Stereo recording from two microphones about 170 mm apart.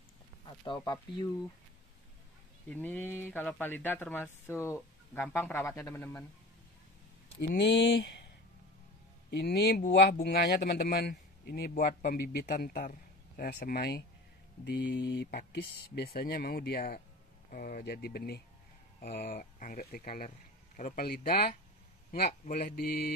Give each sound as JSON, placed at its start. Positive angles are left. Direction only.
{"t": 0.7, "sound": "speech", "side_deg": 25}
{"t": 2.7, "sound": "speech", "side_deg": 10}
{"t": 7.3, "sound": "speech", "side_deg": 80}
{"t": 9.3, "sound": "a man's voice", "side_deg": 80}
{"t": 14.6, "sound": "speech", "side_deg": 90}
{"t": 18.9, "sound": "a man's voice", "side_deg": 55}